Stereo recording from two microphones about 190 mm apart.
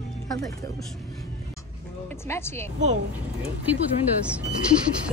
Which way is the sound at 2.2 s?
15° left (ahead or behind).